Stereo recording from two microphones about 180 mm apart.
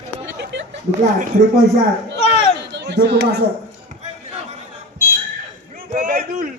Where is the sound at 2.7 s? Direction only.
75° right (ahead or behind).